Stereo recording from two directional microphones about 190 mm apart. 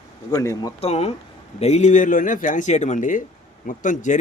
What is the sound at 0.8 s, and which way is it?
Speech, 35° left (ahead or behind).